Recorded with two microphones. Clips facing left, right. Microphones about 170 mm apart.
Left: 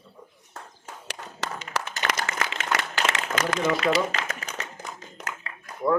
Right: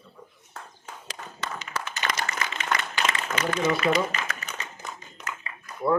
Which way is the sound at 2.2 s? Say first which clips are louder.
Left 1 dB; 90° left.